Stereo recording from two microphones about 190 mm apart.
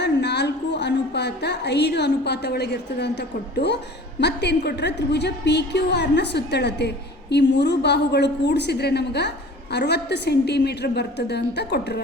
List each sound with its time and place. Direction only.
0.0 s a woman's voice: 65° left (ahead or behind)